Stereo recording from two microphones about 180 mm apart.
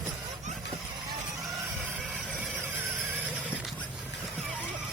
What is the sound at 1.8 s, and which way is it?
Squeal, 5° right (ahead or behind).